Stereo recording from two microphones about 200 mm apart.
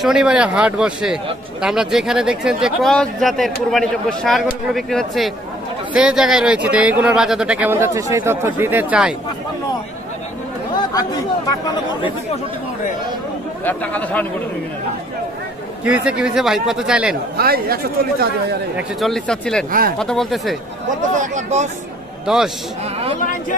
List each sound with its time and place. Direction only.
0.0 s a man's voice: 5° right (ahead or behind)
10.8 s speech: 20° left (ahead or behind)
13.7 s speech: 10° left (ahead or behind)
15.8 s a man's voice: 5° right (ahead or behind)
17.4 s speech: 50° right (ahead or behind)
18.8 s a man's voice: centre (ahead or behind)
21.2 s speech: 35° right (ahead or behind)
22.2 s a man's voice: 5° right (ahead or behind)